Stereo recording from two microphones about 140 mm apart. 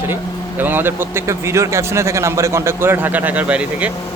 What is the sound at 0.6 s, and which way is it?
A man's voice, 15° right (ahead or behind).